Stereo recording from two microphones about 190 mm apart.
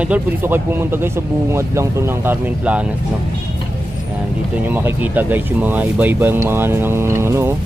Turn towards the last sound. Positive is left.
turn(degrees=-15)  # may be behind; listen again after turning